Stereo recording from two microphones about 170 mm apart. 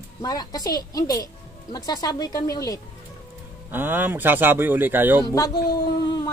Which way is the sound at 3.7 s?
10° right (ahead or behind).